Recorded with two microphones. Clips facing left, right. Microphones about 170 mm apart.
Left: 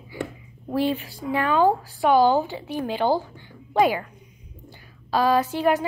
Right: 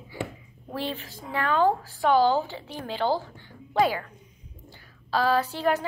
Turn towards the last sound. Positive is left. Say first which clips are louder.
# left 4 dB
turn(degrees=15)  # may be behind; listen again after turning